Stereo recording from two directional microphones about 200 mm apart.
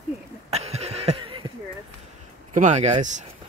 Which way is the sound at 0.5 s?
30° right (ahead or behind).